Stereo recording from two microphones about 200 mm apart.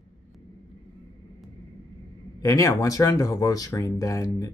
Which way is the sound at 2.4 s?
15° left (ahead or behind).